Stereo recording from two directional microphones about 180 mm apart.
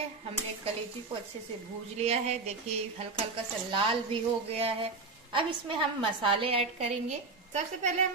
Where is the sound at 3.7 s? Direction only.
30° right (ahead or behind).